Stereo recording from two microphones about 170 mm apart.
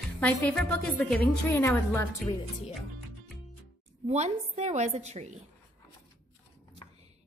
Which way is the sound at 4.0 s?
40° right (ahead or behind).